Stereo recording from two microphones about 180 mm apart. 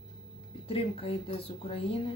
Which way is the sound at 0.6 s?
30° left (ahead or behind).